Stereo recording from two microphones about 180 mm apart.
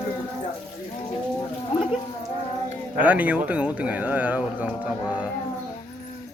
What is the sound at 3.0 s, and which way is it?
Speech, 10° right (ahead or behind).